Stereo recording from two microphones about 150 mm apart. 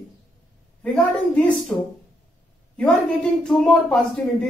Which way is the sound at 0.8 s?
10° left (ahead or behind).